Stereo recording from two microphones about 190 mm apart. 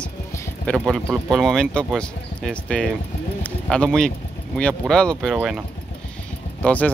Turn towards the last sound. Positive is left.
turn(degrees=5)  # may be behind; listen again after turning